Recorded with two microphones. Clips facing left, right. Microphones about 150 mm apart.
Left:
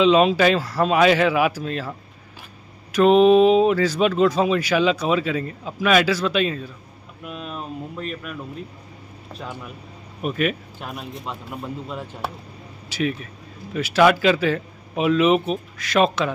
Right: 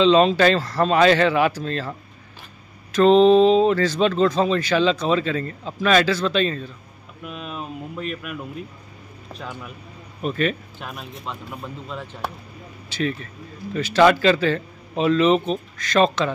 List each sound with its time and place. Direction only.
0.0 s speech: 5° left (ahead or behind)
7.2 s a sound: centre (ahead or behind)
10.2 s speech: 5° left (ahead or behind)